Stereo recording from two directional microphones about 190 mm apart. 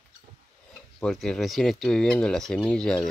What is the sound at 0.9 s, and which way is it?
Speech, centre (ahead or behind).